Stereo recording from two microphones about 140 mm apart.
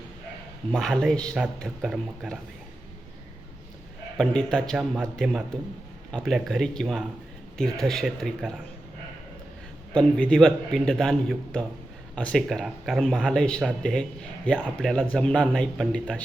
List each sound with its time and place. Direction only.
0.7 s speech: 5° left (ahead or behind)
4.2 s speech: 5° left (ahead or behind)
9.9 s a man's voice: 5° left (ahead or behind)